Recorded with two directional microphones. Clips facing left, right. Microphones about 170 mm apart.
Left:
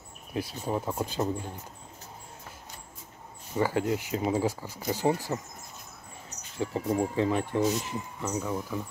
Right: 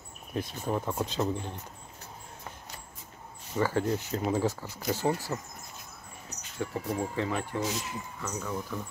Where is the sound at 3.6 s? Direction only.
15° left (ahead or behind).